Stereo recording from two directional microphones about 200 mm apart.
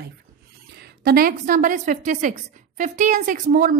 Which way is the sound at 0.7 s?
50° right (ahead or behind).